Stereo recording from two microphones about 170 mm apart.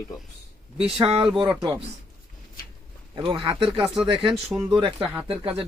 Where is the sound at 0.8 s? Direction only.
35° right (ahead or behind).